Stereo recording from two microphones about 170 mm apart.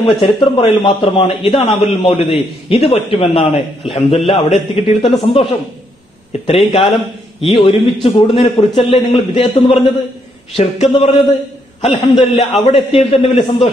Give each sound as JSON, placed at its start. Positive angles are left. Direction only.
{"t": 0.2, "sound": "a man's voice", "side_deg": 30}